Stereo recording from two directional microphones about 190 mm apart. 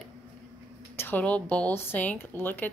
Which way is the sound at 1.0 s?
10° left (ahead or behind).